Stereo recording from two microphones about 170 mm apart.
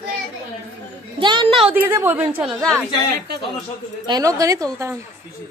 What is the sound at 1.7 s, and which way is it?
Speech, 15° right (ahead or behind).